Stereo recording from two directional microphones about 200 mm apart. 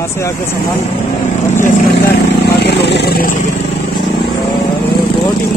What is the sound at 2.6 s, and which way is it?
Vehicle, 60° left (ahead or behind).